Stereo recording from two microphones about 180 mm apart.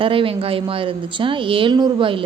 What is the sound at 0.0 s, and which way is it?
A woman's voice, 30° right (ahead or behind).